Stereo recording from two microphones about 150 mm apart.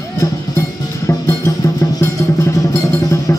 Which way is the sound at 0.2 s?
20° left (ahead or behind).